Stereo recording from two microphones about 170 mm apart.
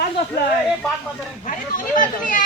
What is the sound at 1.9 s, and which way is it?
Speech, 50° left (ahead or behind).